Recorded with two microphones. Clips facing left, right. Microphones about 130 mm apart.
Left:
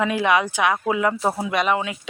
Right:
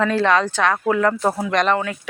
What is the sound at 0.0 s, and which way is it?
Speech, 15° left (ahead or behind).